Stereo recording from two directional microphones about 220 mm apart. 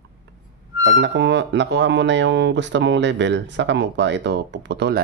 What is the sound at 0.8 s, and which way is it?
Speech, 60° right (ahead or behind).